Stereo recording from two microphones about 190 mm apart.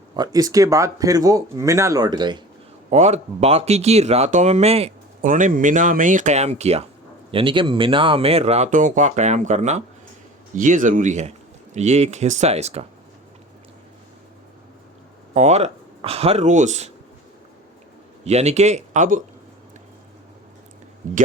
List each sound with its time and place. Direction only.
0.2 s speech: 20° right (ahead or behind)
2.9 s speech: 35° right (ahead or behind)
15.4 s speech: 35° right (ahead or behind)
18.3 s speech: 35° right (ahead or behind)